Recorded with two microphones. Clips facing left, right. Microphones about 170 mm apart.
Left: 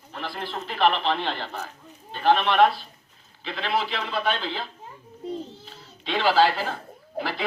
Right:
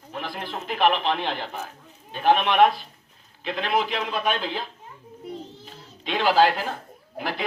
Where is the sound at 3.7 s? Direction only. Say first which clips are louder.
Right 1 dB; 15° right (ahead or behind).